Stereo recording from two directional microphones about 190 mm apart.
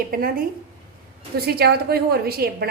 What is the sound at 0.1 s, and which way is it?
A woman's voice, 50° right (ahead or behind).